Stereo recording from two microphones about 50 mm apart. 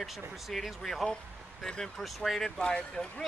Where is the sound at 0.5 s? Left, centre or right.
Centre.